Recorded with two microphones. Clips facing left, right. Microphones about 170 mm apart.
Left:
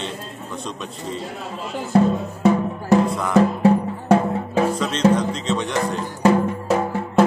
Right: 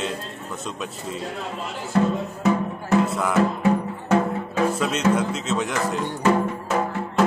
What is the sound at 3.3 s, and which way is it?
Music, 35° left (ahead or behind).